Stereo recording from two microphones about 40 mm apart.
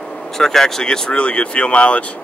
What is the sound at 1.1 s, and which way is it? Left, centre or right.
Speech, left.